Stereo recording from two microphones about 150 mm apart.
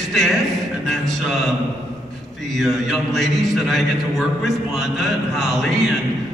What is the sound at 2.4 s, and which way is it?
A man's voice, centre (ahead or behind).